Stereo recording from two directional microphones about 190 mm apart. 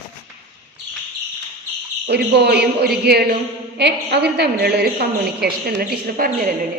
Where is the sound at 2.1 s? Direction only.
55° right (ahead or behind).